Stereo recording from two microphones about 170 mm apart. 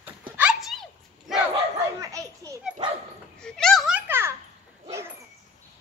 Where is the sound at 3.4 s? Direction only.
5° left (ahead or behind).